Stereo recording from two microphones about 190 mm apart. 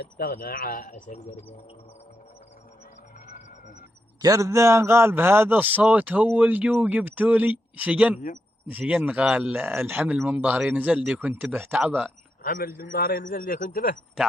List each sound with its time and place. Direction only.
0.0 s a man's voice: 55° left (ahead or behind)
4.2 s a man's voice: 15° right (ahead or behind)
12.4 s a man's voice: 50° left (ahead or behind)